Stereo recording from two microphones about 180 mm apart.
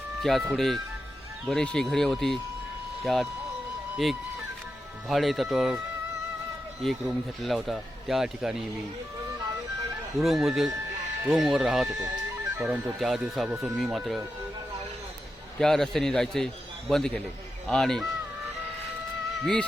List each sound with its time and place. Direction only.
0.2 s speech: centre (ahead or behind)
7.4 s speech: centre (ahead or behind)
10.2 s speech: centre (ahead or behind)
15.5 s speech: 5° left (ahead or behind)